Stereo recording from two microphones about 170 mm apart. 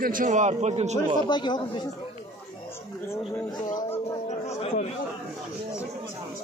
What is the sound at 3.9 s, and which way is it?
Speech, 40° left (ahead or behind).